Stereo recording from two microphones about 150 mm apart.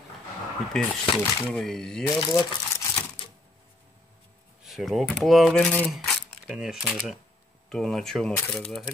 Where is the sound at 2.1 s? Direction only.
25° left (ahead or behind).